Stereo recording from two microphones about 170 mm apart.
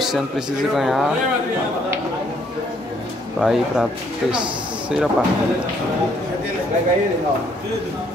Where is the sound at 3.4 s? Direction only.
Centre (ahead or behind).